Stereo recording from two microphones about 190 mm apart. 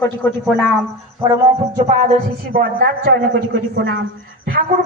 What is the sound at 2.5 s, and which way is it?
Speech, 55° right (ahead or behind).